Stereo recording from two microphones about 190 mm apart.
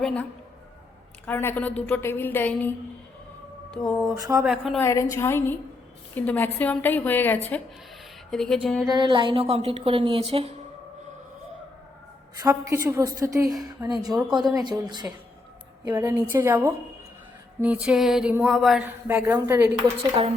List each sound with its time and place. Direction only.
0.0 s a woman's voice: 5° left (ahead or behind)
1.3 s a woman's voice: 10° left (ahead or behind)
4.1 s a woman's voice: 20° right (ahead or behind)
4.4 s speech: centre (ahead or behind)
4.8 s a woman's voice: 15° left (ahead or behind)
8.9 s a woman's voice: 25° right (ahead or behind)
12.4 s a sound: 15° right (ahead or behind)
14.1 s speech: centre (ahead or behind)
14.5 s a woman's voice: 25° right (ahead or behind)
15.8 s a sound: 20° right (ahead or behind)